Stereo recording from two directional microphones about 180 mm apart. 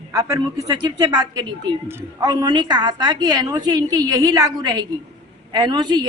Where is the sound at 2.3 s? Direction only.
25° right (ahead or behind).